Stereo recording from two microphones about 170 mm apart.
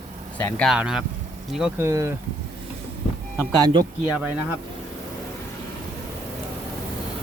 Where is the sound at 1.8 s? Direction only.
15° right (ahead or behind).